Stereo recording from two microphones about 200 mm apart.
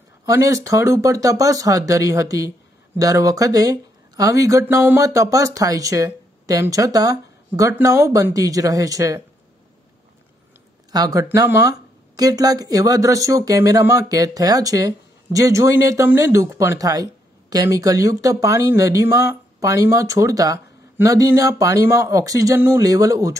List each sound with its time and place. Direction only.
0.2 s speech: 15° right (ahead or behind)
10.9 s speech: 20° right (ahead or behind)